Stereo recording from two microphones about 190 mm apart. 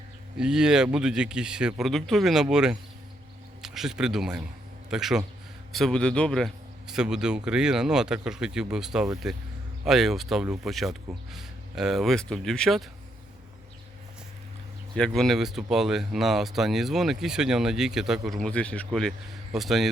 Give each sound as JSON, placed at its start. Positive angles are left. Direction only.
{"t": 0.3, "sound": "a man's voice", "side_deg": -5}
{"t": 14.9, "sound": "speech", "side_deg": 5}